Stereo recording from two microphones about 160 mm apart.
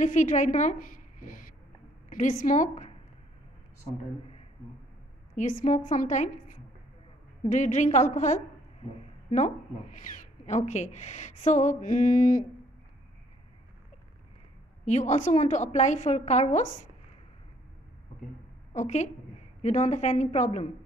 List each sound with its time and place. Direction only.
0.0 s a woman's voice: 50° left (ahead or behind)
5.3 s a woman's voice: 55° left (ahead or behind)
10.1 s a woman's voice: 45° left (ahead or behind)
14.9 s a woman's voice: 45° left (ahead or behind)
18.7 s a woman's voice: 45° left (ahead or behind)